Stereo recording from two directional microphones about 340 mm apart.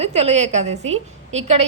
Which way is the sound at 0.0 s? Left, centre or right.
Centre.